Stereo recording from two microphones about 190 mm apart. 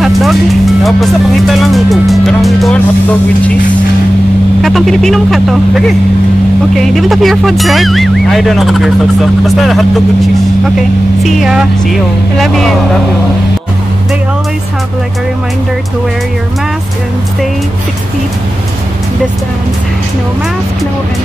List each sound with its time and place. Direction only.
0.0 s music: centre (ahead or behind)
0.8 s speech: centre (ahead or behind)
4.6 s speech: centre (ahead or behind)